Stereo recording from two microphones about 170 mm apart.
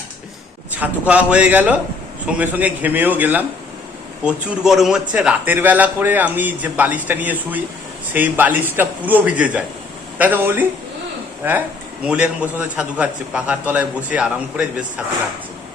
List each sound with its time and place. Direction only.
0.8 s a man's voice: 5° right (ahead or behind)